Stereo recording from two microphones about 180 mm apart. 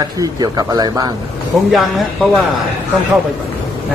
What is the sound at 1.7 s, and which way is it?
Speech, centre (ahead or behind).